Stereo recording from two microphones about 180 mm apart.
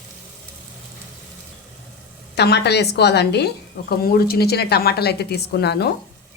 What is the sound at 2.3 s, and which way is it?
A woman's voice, 65° left (ahead or behind).